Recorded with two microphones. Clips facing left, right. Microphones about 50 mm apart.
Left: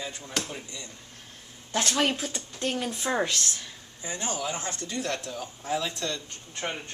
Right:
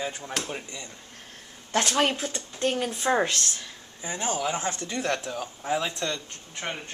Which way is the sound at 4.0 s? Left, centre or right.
Right.